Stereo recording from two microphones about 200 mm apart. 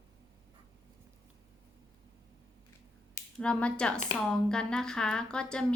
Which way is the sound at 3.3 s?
5° left (ahead or behind).